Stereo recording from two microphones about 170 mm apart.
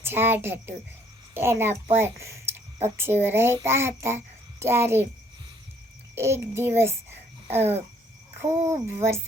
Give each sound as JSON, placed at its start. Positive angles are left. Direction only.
{"t": 0.0, "sound": "a child's voice", "side_deg": -15}
{"t": 6.1, "sound": "a child's voice", "side_deg": -15}
{"t": 7.4, "sound": "cricket", "side_deg": -35}
{"t": 8.6, "sound": "a child's voice", "side_deg": -15}